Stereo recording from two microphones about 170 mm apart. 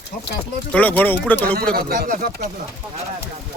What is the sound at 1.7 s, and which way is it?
Speech, 55° right (ahead or behind).